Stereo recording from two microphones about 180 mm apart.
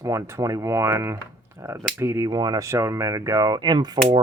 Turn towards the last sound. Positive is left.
turn(degrees=-20)  # may be behind; listen again after turning